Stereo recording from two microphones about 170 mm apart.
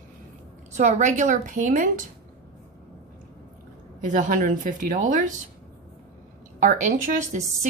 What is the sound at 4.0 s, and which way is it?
Speech, 50° right (ahead or behind).